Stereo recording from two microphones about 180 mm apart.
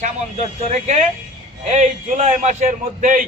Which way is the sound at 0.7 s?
40° right (ahead or behind).